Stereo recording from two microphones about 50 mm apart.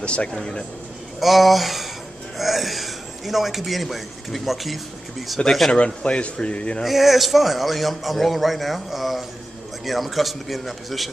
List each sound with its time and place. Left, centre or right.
0.0 s speech: left
1.2 s a man's voice: centre
5.7 s speech: left
6.8 s a man's voice: centre